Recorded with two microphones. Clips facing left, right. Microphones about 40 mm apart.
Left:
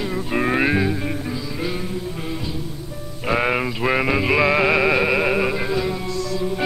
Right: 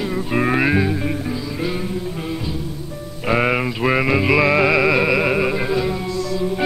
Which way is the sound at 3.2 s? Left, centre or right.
Centre.